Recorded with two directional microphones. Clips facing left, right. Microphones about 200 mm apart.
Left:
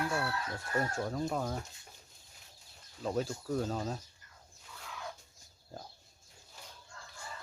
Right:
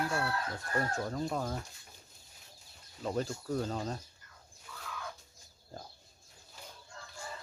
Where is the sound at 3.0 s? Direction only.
Centre (ahead or behind).